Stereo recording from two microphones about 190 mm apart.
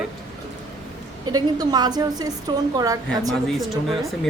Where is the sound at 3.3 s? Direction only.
Centre (ahead or behind).